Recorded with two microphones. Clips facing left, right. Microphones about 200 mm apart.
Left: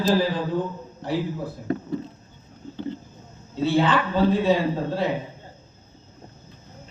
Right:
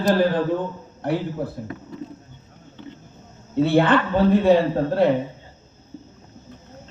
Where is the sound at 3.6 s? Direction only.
60° right (ahead or behind).